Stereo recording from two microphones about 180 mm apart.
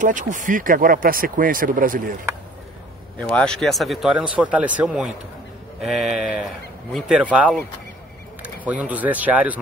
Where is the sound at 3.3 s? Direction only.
5° left (ahead or behind).